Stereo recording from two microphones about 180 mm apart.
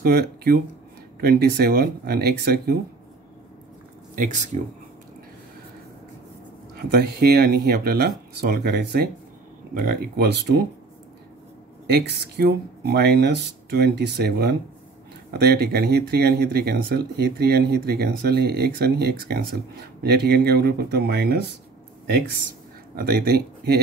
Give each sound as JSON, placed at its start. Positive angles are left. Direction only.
{"t": 0.0, "sound": "speech", "side_deg": -60}
{"t": 4.1, "sound": "speech", "side_deg": -45}
{"t": 6.8, "sound": "speech", "side_deg": -60}
{"t": 11.9, "sound": "speech", "side_deg": -65}
{"t": 22.9, "sound": "speech", "side_deg": -55}